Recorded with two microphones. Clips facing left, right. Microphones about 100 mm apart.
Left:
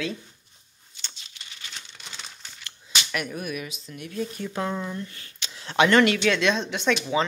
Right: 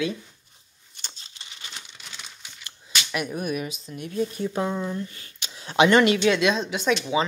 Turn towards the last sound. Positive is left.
turn(degrees=-10)  # may be behind; listen again after turning